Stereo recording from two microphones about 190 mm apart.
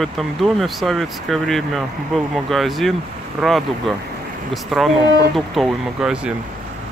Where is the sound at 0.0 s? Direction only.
Centre (ahead or behind).